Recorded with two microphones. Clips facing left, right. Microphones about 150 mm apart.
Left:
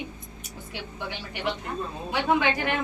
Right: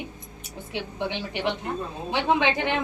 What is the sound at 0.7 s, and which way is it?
A woman's voice, 25° right (ahead or behind).